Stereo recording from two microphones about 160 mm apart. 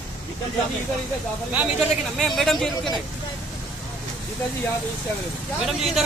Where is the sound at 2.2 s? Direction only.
Centre (ahead or behind).